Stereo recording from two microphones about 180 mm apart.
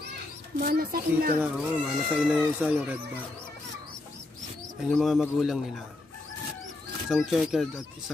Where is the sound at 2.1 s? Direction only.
5° right (ahead or behind).